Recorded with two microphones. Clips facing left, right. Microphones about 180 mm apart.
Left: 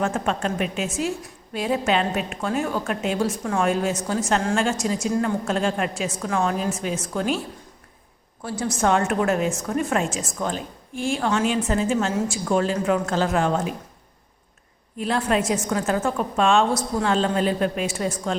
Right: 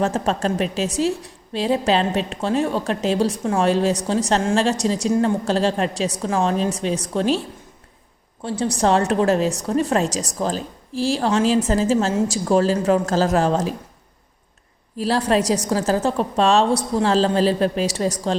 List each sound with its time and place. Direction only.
0.0 s a woman's voice: 35° right (ahead or behind)
8.4 s a woman's voice: 30° right (ahead or behind)
14.9 s a woman's voice: 35° right (ahead or behind)